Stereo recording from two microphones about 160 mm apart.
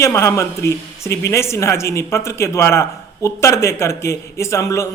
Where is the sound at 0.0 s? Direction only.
15° left (ahead or behind).